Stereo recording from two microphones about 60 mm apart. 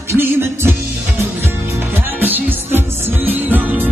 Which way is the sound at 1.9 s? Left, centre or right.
Right.